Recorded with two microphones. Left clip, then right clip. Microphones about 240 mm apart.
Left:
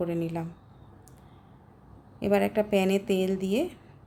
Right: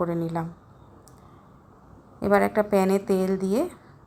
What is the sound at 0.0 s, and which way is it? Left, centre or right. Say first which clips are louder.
Speech: right 3 dB; centre.